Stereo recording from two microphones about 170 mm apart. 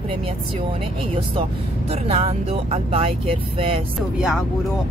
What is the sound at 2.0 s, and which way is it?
Speech, 35° right (ahead or behind).